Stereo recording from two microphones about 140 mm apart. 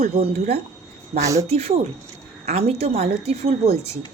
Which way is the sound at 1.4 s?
45° right (ahead or behind).